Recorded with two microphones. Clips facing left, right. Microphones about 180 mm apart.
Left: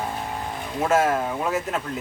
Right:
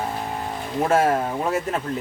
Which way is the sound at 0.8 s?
30° right (ahead or behind).